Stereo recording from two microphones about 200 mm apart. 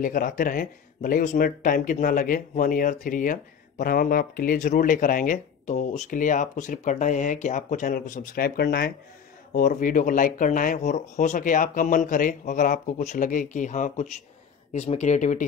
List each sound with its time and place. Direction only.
0.0 s speech: 45° left (ahead or behind)
9.5 s speech: 40° left (ahead or behind)